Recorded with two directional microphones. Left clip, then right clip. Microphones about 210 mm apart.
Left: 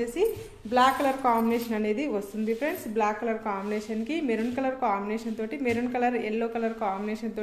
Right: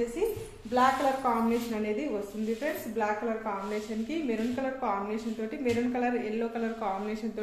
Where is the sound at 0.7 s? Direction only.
40° left (ahead or behind).